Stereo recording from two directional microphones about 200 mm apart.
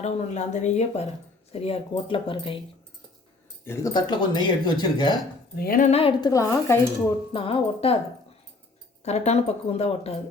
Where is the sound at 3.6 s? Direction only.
15° left (ahead or behind).